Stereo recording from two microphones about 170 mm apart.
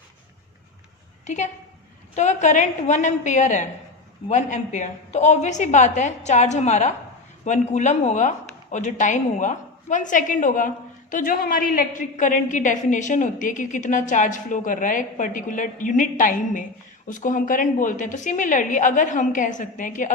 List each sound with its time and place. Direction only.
1.2 s a woman's voice: 45° left (ahead or behind)